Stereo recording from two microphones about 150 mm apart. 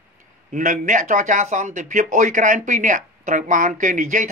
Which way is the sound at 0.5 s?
55° right (ahead or behind).